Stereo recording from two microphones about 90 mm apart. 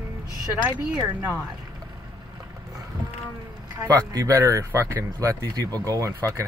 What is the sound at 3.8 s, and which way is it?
Speech, 40° right (ahead or behind).